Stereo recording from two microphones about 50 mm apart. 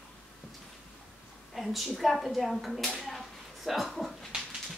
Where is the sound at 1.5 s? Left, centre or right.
Centre.